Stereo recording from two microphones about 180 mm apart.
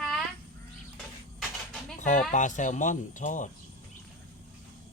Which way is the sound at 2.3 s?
45° left (ahead or behind).